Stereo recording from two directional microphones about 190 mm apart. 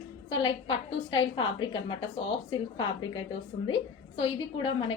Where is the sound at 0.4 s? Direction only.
30° left (ahead or behind).